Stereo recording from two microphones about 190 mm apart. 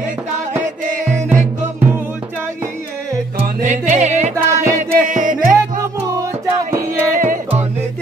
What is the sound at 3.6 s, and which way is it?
Music, 40° right (ahead or behind).